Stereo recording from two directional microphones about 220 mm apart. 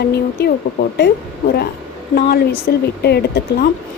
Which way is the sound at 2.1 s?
45° left (ahead or behind).